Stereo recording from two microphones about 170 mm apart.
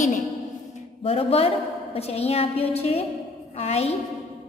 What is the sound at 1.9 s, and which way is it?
A woman's voice, 35° left (ahead or behind).